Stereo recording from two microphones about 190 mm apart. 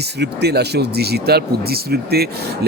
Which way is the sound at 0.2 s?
60° right (ahead or behind).